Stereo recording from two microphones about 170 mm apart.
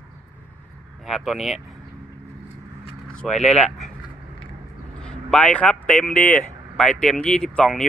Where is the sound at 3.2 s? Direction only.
Centre (ahead or behind).